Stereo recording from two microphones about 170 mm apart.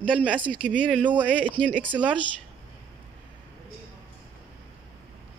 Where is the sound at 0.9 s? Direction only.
10° right (ahead or behind).